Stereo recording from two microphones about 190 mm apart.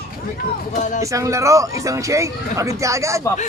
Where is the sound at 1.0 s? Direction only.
15° right (ahead or behind).